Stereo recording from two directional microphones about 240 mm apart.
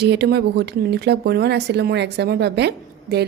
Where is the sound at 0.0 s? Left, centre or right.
Right.